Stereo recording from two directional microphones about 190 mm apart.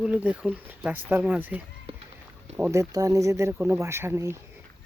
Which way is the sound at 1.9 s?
30° right (ahead or behind).